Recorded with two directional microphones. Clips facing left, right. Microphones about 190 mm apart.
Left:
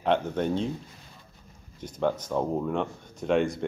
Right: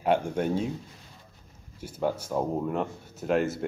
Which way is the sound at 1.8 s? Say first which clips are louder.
Left 2 dB; 10° right (ahead or behind).